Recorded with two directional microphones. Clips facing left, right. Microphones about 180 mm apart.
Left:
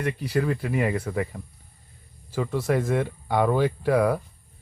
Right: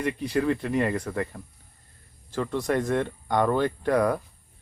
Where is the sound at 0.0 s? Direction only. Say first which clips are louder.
Even; centre (ahead or behind).